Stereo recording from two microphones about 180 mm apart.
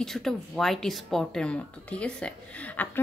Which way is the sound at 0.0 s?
Centre (ahead or behind).